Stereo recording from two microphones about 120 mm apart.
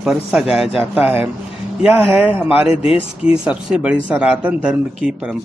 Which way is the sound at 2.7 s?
55° left (ahead or behind).